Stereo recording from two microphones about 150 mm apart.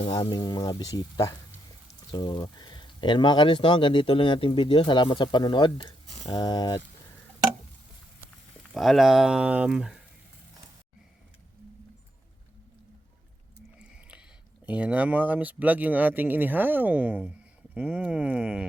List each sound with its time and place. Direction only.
0.1 s speech: 30° left (ahead or behind)
8.7 s speech: centre (ahead or behind)
13.7 s a sound: 5° right (ahead or behind)
14.7 s speech: 10° right (ahead or behind)